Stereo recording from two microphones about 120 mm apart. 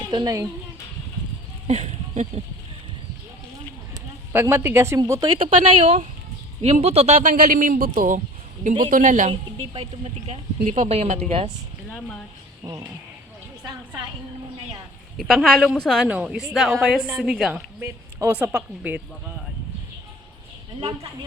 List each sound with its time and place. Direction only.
0.1 s speech: 40° right (ahead or behind)
1.6 s speech: 70° right (ahead or behind)
4.3 s speech: 20° right (ahead or behind)
5.3 s a man's voice: 50° right (ahead or behind); by 9.3 s 90° right
9.3 s a woman's voice: 55° right (ahead or behind)
15.2 s a woman's voice: 5° left (ahead or behind)
16.0 s a woman's voice: 10° right (ahead or behind)
18.3 s speech: 10° right (ahead or behind)